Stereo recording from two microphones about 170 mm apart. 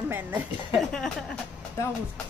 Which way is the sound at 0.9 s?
5° left (ahead or behind).